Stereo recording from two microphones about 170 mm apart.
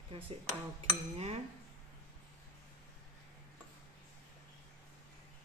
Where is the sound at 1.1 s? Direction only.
40° right (ahead or behind).